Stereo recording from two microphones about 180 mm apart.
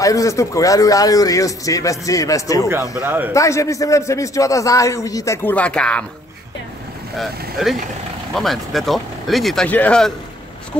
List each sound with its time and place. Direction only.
0.0 s a man's voice: 20° left (ahead or behind)
3.0 s speech: 10° right (ahead or behind)
3.3 s a man's voice: 15° left (ahead or behind)
7.2 s speech: centre (ahead or behind)